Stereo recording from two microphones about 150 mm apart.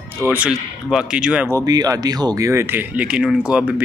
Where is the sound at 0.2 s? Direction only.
10° right (ahead or behind).